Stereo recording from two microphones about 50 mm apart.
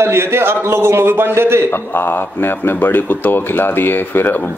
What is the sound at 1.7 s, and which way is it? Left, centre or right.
Speech, left.